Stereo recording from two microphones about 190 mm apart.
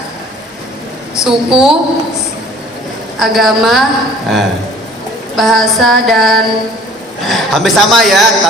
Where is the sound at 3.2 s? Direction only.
Centre (ahead or behind).